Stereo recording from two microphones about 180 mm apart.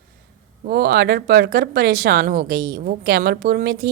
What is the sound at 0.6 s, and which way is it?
Speech, 60° right (ahead or behind).